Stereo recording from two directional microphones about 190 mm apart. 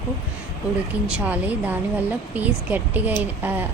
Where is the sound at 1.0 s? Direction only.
5° right (ahead or behind).